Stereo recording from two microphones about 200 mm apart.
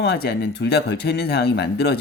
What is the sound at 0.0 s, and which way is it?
Speech, 55° left (ahead or behind).